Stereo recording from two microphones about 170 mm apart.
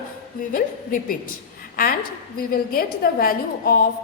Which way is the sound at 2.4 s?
60° left (ahead or behind).